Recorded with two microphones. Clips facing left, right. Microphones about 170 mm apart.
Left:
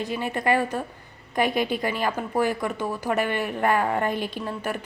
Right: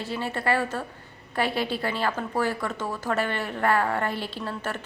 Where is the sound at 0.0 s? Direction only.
15° left (ahead or behind).